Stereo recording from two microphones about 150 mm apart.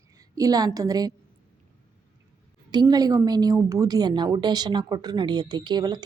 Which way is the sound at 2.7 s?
25° right (ahead or behind).